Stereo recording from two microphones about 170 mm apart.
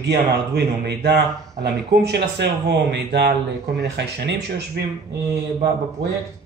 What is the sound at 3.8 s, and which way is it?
Speech, 90° right.